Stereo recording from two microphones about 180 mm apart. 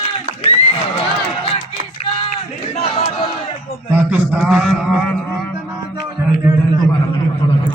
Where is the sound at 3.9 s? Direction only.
10° right (ahead or behind).